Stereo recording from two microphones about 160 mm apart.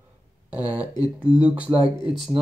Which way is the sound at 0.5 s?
10° right (ahead or behind).